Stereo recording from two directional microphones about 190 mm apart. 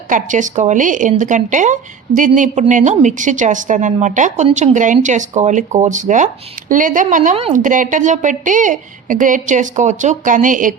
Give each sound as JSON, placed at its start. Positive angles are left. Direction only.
{"t": 0.1, "sound": "speech", "side_deg": -40}